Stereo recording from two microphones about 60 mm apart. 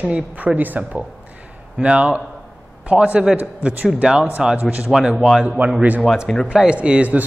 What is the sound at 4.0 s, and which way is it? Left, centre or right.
A man's voice, centre.